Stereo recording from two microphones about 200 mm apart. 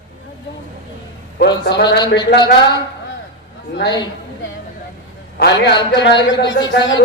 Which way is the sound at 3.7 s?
60° left (ahead or behind).